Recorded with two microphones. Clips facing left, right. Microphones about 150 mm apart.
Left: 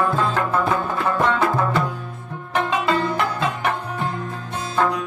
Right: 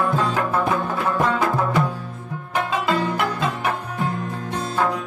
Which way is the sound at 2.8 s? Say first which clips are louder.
Left 1 dB; 10° right (ahead or behind).